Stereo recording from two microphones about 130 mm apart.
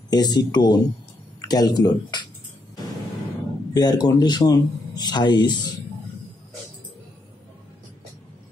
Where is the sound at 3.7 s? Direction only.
30° left (ahead or behind).